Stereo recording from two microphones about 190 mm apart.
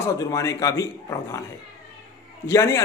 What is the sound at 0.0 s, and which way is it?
A man's voice, 15° left (ahead or behind).